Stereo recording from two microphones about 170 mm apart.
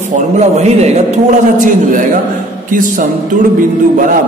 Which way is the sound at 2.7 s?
50° right (ahead or behind).